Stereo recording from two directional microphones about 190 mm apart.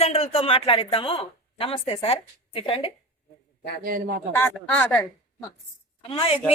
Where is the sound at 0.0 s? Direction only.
30° left (ahead or behind).